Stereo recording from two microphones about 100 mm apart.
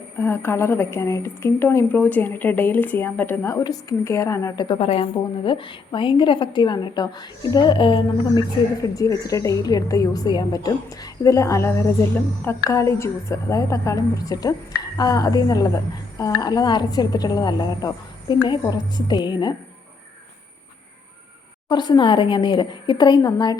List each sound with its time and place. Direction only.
0.2 s a woman's voice: 25° left (ahead or behind)
3.6 s a woman's voice: 40° left (ahead or behind)
4.0 s a woman's voice: 30° left (ahead or behind)
4.8 s speech: 90° left
5.5 s a woman's voice: 55° left (ahead or behind)
8.8 s a woman's voice: 35° left (ahead or behind)
21.7 s a woman's voice: 45° left (ahead or behind)